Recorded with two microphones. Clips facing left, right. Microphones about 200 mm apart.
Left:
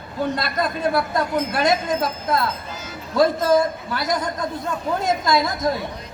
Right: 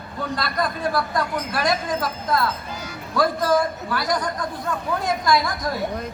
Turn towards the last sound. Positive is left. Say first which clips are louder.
# left 1 dB
turn(degrees=25)  # may be behind; listen again after turning